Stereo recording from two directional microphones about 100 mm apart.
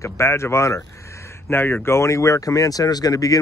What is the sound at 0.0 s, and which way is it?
Speech, 30° left (ahead or behind).